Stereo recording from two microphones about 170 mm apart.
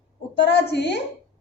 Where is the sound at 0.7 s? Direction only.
85° left.